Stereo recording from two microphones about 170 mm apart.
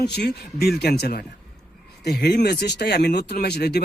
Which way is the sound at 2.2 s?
75° left (ahead or behind).